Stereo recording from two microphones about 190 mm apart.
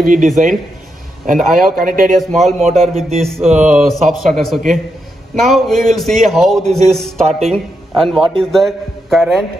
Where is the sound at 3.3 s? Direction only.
35° right (ahead or behind).